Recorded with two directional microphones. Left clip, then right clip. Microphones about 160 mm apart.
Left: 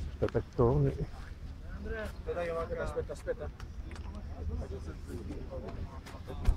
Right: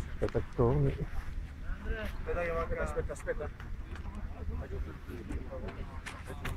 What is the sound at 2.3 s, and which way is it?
Speech, 5° left (ahead or behind).